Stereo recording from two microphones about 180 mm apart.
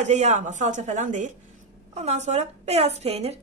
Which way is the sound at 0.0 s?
40° right (ahead or behind).